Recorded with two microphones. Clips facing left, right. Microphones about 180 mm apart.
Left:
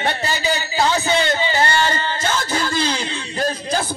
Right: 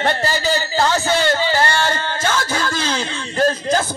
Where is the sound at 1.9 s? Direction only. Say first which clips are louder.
Right 1 dB; 50° right (ahead or behind).